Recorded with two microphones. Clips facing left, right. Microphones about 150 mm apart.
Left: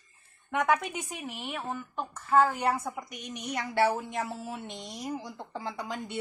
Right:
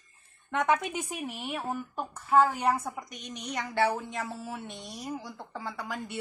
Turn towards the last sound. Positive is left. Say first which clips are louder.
# left 1 dB
turn(degrees=20)  # may be behind; listen again after turning